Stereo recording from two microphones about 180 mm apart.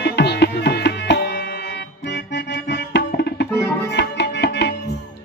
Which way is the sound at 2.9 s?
65° left (ahead or behind).